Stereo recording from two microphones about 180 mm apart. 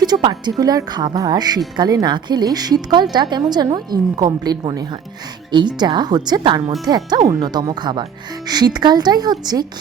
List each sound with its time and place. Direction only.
0.0 s music: 25° right (ahead or behind)
0.6 s a woman's voice: 20° right (ahead or behind)